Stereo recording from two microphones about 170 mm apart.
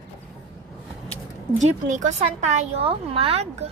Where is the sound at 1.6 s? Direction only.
45° right (ahead or behind).